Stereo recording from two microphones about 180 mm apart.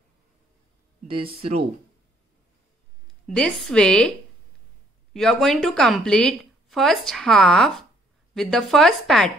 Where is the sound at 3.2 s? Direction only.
5° left (ahead or behind).